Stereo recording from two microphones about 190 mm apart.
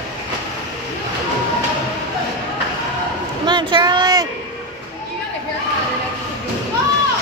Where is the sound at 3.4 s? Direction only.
25° right (ahead or behind).